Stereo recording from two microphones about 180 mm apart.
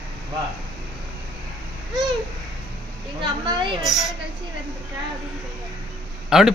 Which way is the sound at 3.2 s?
25° right (ahead or behind).